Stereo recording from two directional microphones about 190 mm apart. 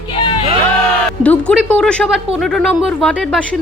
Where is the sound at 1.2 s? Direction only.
5° left (ahead or behind).